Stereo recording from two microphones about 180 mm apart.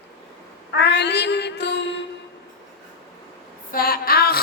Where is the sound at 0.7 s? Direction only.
70° left (ahead or behind).